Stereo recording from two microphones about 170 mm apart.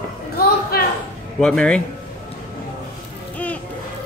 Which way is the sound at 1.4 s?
5° left (ahead or behind).